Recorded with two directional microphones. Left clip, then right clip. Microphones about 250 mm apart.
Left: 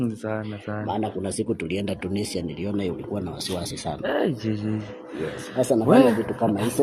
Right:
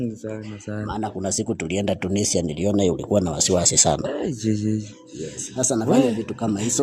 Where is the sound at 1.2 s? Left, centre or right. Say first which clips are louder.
Right 2 dB; right.